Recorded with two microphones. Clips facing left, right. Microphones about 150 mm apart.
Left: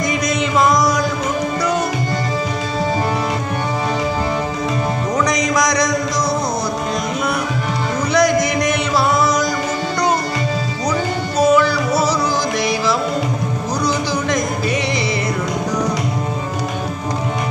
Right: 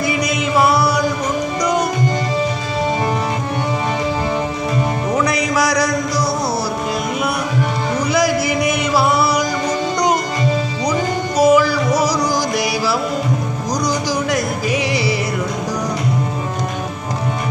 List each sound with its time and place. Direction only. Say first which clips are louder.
0.0 s music: even; 5° right (ahead or behind)
5.1 s music: even; 5° right (ahead or behind)
8.1 s a sound: left 3 dB; 5° right (ahead or behind)
11.3 s music: right 1 dB; 10° right (ahead or behind)